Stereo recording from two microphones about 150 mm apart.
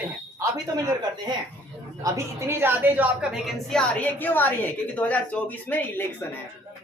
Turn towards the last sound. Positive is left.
turn(degrees=15)  # may be behind; listen again after turning